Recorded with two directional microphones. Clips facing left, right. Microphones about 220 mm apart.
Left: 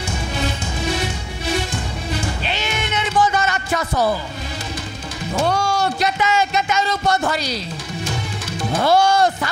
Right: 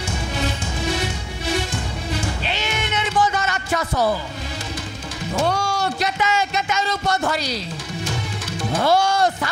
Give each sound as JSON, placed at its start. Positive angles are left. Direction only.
{"t": 0.9, "sound": "music", "side_deg": 15}
{"t": 2.4, "sound": "cat", "side_deg": 15}
{"t": 3.9, "sound": "speech", "side_deg": 30}
{"t": 5.3, "sound": "music", "side_deg": 25}
{"t": 5.9, "sound": "a sound", "side_deg": 15}
{"t": 8.7, "sound": "speech", "side_deg": 20}